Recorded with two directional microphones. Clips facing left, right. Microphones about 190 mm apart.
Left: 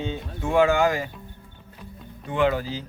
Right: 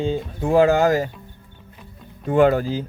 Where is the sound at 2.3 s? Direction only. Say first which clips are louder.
Right 7 dB; 45° right (ahead or behind).